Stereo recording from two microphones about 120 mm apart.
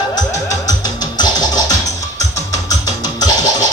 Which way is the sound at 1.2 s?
35° left (ahead or behind).